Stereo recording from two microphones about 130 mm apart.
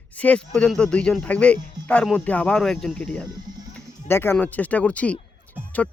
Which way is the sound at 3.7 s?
15° left (ahead or behind).